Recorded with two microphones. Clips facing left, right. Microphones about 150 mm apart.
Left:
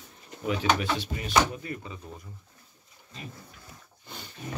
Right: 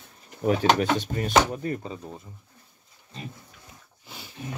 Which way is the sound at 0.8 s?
50° right (ahead or behind).